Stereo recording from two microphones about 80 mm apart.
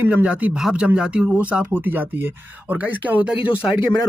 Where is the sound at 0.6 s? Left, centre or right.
Centre.